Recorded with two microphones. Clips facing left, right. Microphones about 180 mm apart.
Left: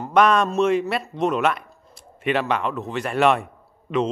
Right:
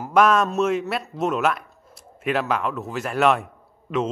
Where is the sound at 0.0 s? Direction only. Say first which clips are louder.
Even; 5° right (ahead or behind).